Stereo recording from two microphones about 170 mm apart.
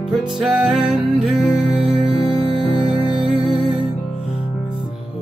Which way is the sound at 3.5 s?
Centre (ahead or behind).